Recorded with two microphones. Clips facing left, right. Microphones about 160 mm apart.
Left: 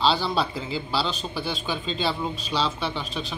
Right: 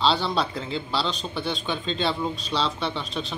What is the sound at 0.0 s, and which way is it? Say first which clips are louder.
A man's voice: even; centre (ahead or behind).